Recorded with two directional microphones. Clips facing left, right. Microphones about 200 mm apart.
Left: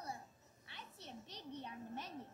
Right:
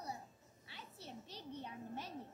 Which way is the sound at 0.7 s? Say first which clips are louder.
Right 1 dB; 10° right (ahead or behind).